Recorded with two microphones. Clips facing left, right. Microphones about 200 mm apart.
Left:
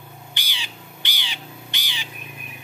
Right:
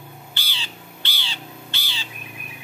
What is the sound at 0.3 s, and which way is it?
Crow, 15° left (ahead or behind).